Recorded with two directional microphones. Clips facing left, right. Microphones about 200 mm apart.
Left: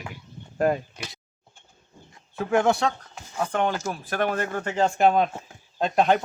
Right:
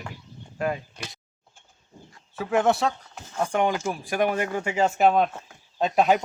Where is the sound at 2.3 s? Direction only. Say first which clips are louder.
Left 1 dB; centre (ahead or behind).